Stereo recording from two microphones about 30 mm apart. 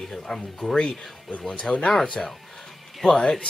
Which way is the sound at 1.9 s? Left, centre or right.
Centre.